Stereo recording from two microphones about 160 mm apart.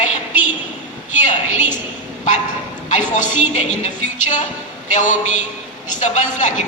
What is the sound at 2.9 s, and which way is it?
A woman's voice, 50° left (ahead or behind).